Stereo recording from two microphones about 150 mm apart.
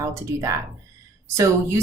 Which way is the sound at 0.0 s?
20° right (ahead or behind).